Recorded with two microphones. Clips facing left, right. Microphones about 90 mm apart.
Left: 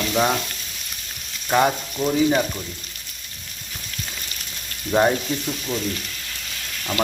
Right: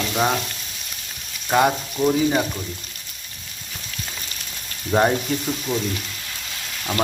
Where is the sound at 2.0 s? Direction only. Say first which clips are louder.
Even; 5° right (ahead or behind).